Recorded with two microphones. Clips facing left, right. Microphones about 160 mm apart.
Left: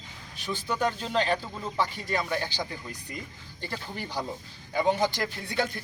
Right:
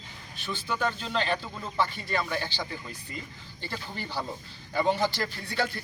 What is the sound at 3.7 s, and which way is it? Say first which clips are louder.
Speech: even; 15° left (ahead or behind).